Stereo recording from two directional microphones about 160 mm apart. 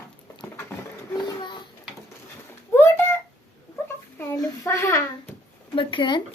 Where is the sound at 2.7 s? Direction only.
15° left (ahead or behind).